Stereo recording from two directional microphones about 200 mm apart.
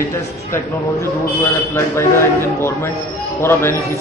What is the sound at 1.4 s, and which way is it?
A man's voice, 15° left (ahead or behind).